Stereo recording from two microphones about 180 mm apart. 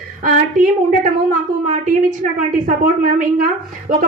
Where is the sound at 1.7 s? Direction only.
45° right (ahead or behind).